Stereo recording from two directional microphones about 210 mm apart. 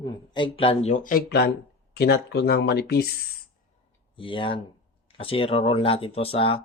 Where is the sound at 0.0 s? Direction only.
25° left (ahead or behind); by 3.1 s 50° left (ahead or behind).